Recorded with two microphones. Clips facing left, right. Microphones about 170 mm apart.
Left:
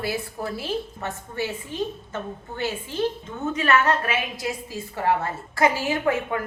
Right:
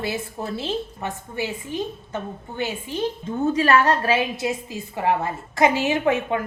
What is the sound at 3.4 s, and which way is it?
A woman's voice, 35° right (ahead or behind).